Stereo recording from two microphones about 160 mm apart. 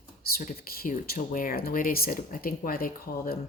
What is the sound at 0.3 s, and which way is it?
Speech, 65° left (ahead or behind).